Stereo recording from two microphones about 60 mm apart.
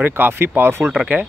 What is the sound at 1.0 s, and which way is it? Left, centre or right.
Speech, right.